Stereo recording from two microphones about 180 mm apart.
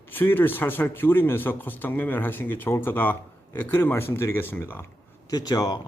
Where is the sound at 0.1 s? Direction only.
10° left (ahead or behind).